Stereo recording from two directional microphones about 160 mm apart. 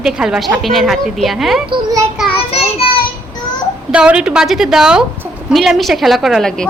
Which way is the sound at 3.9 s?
5° right (ahead or behind).